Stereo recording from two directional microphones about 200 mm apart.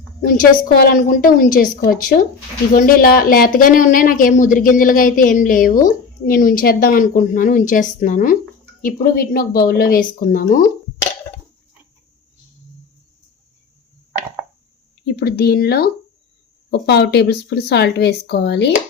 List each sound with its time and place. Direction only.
0.8 s a woman's voice: 45° left (ahead or behind)
15.0 s speech: 55° left (ahead or behind)